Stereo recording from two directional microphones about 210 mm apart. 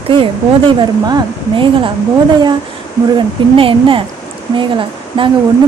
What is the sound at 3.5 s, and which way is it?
Speech, 25° right (ahead or behind).